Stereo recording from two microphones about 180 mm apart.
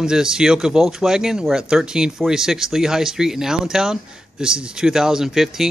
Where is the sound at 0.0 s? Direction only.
5° right (ahead or behind).